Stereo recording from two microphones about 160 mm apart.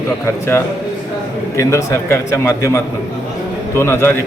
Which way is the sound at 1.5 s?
15° left (ahead or behind).